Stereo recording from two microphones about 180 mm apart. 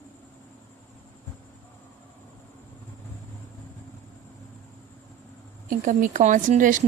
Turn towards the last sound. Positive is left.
turn(degrees=-45)  # may be behind; listen again after turning